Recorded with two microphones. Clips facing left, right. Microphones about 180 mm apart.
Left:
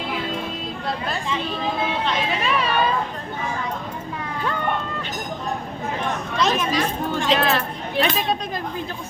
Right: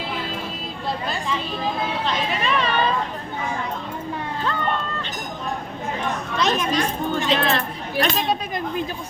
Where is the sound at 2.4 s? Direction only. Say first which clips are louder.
Right 1 dB; 5° left (ahead or behind).